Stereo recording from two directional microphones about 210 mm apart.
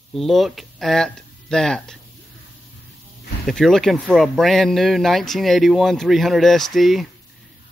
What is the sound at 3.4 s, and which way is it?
Speech, centre (ahead or behind).